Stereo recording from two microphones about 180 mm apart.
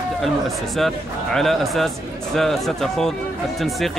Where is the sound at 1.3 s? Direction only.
Centre (ahead or behind).